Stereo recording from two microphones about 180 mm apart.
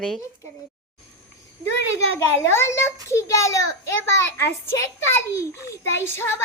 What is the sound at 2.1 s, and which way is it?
A child's voice, 15° left (ahead or behind).